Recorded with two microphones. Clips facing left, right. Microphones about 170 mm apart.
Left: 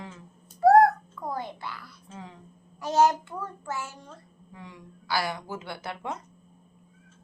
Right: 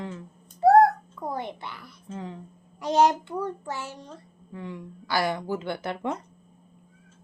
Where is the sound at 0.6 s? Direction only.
25° right (ahead or behind).